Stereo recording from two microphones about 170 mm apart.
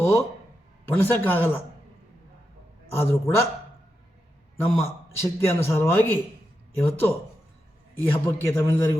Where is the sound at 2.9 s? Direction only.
15° left (ahead or behind).